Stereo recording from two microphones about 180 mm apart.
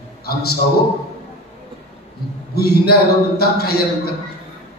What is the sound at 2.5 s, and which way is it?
A man's voice, 60° left (ahead or behind).